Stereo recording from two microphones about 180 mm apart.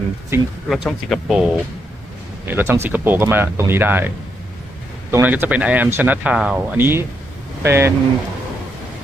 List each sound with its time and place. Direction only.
0.3 s speech: 10° right (ahead or behind)
0.7 s speech: centre (ahead or behind)
5.1 s speech: 10° right (ahead or behind)